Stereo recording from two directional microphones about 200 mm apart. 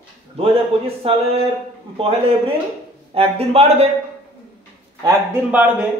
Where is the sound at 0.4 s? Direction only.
30° right (ahead or behind).